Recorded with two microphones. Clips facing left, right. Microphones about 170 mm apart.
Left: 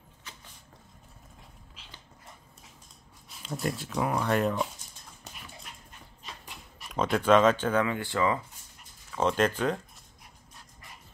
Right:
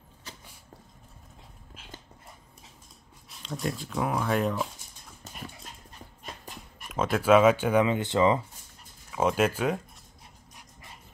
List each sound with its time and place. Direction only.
3.3 s speech: centre (ahead or behind)
6.2 s dog: 45° right (ahead or behind)
6.9 s speech: 5° right (ahead or behind); by 8.4 s 20° right (ahead or behind)
9.1 s speech: 10° right (ahead or behind)